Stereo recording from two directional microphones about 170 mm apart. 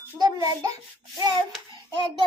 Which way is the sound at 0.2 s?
25° right (ahead or behind).